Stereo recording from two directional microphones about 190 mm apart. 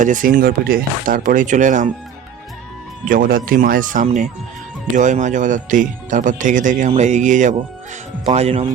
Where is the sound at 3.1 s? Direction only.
45° right (ahead or behind).